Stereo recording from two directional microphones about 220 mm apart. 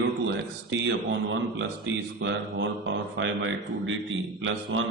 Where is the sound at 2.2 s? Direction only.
55° right (ahead or behind).